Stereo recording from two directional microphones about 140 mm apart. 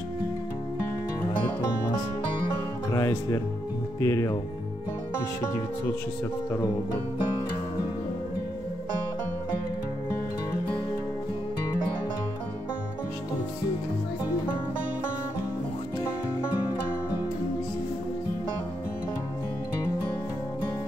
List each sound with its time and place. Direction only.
2.9 s music: 20° left (ahead or behind)
4.0 s speech: 20° left (ahead or behind)